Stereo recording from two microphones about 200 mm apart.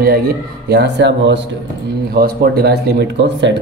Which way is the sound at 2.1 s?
50° right (ahead or behind).